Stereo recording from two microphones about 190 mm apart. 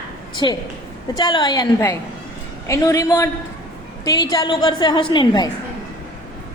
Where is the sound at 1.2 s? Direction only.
25° left (ahead or behind).